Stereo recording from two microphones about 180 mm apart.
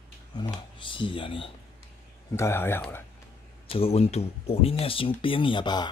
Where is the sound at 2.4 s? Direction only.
15° left (ahead or behind).